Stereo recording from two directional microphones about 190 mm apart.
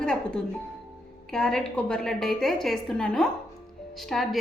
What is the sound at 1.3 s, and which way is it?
A woman's voice, 5° left (ahead or behind).